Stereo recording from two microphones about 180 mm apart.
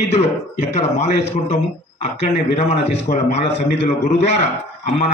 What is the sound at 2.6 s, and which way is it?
Speech, 35° left (ahead or behind).